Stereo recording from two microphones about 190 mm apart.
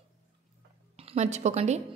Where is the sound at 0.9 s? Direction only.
35° right (ahead or behind).